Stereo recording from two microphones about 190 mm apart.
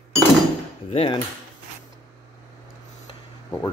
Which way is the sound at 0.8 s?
30° left (ahead or behind).